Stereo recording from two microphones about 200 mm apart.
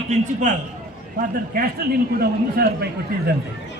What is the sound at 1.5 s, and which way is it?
A man's voice, 50° right (ahead or behind).